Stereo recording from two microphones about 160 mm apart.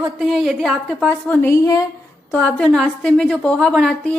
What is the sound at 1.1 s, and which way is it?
Speech, 10° left (ahead or behind).